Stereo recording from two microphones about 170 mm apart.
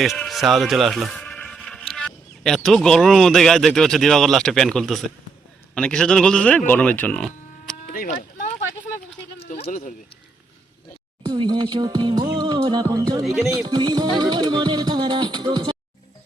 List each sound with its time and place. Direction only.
0.0 s bleat: centre (ahead or behind)
1.9 s speech: 5° left (ahead or behind)
7.9 s a sound: 55° left (ahead or behind)
9.4 s bleat: 40° left (ahead or behind)
11.3 s music: 25° right (ahead or behind)
13.2 s speech: 5° right (ahead or behind)
13.5 s music: 20° right (ahead or behind)